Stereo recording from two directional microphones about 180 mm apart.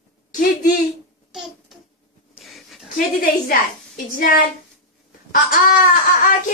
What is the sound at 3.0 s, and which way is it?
A woman's voice, 55° left (ahead or behind).